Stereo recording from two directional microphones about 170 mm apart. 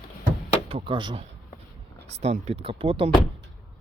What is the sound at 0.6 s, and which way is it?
Speech, 30° right (ahead or behind).